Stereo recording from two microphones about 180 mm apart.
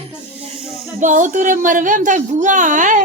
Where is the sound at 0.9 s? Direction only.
45° right (ahead or behind).